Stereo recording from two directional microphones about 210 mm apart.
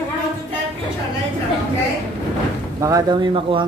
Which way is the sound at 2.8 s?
15° right (ahead or behind).